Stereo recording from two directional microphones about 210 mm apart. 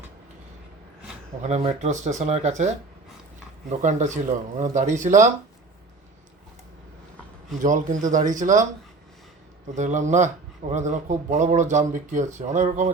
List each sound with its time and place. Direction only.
1.4 s speech: 30° right (ahead or behind)
7.6 s speech: 35° right (ahead or behind)
9.7 s speech: 35° right (ahead or behind)